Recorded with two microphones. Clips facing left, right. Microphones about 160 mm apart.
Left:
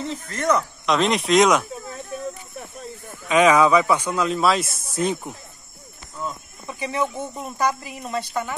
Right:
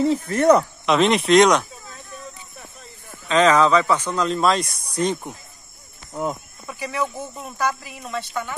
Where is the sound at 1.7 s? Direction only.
60° left (ahead or behind).